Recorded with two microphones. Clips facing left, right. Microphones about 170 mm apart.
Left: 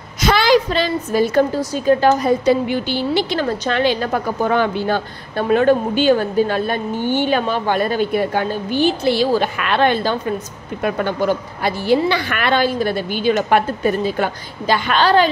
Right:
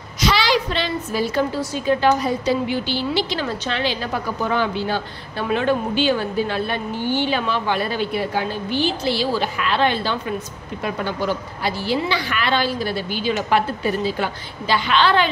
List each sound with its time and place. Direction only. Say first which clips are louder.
0.2 s a woman's voice: left 5 dB; 50° left (ahead or behind)